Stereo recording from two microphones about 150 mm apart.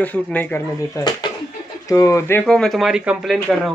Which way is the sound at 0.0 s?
10° left (ahead or behind).